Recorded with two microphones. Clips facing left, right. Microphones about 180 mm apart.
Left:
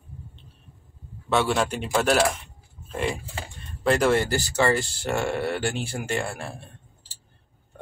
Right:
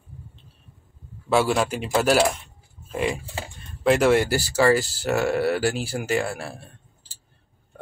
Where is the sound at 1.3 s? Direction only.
5° right (ahead or behind).